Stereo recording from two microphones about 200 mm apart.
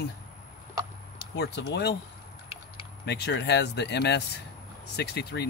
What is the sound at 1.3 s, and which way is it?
Speech, 55° left (ahead or behind).